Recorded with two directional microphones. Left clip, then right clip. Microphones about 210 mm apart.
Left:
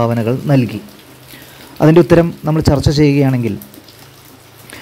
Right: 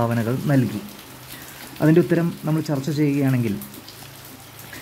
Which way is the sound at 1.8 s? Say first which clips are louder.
Left 9 dB; 25° left (ahead or behind).